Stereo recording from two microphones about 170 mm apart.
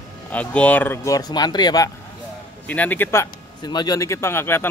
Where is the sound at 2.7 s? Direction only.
10° left (ahead or behind).